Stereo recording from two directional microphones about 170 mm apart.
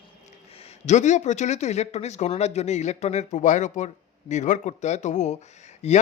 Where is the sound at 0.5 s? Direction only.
40° left (ahead or behind).